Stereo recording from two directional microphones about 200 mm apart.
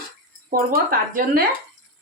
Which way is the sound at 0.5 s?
45° right (ahead or behind).